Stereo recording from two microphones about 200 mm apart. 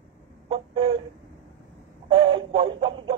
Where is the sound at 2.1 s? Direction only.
20° right (ahead or behind).